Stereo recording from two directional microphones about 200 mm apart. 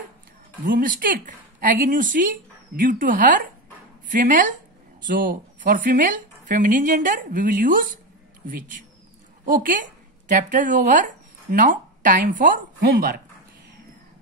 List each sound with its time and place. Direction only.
0.7 s a woman's voice: 45° right (ahead or behind)
9.5 s a woman's voice: 40° right (ahead or behind)